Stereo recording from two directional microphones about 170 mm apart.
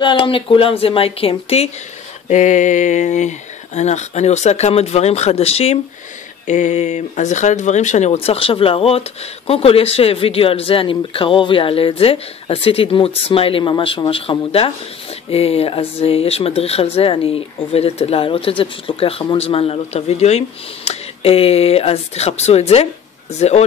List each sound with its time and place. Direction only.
0.0 s speech: 30° left (ahead or behind)
2.2 s speech: 45° left (ahead or behind)